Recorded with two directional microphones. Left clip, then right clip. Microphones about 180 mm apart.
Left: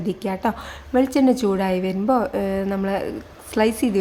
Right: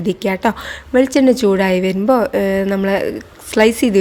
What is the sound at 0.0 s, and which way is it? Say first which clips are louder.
A woman's voice: right 7 dB; 25° right (ahead or behind).